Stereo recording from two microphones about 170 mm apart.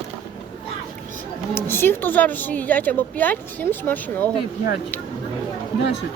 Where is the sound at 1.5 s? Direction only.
15° left (ahead or behind).